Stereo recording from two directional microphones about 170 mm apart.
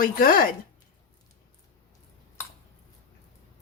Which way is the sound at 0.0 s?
55° left (ahead or behind).